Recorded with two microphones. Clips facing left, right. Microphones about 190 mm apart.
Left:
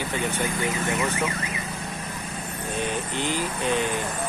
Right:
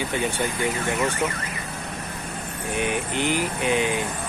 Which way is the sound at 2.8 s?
15° right (ahead or behind).